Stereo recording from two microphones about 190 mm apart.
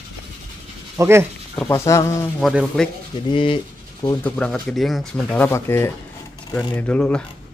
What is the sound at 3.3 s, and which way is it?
Speech, 25° left (ahead or behind).